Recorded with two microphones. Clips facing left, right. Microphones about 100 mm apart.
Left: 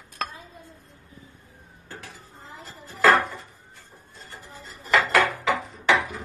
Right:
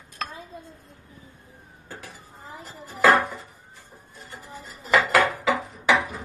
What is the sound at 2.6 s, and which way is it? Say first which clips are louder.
Dishes: even; 15° right (ahead or behind).